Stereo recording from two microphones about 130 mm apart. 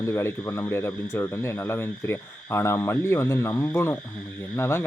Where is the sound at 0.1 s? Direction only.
20° left (ahead or behind).